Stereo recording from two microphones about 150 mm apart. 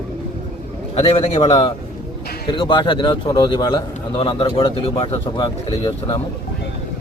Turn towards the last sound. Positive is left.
turn(degrees=30)  # may be behind; listen again after turning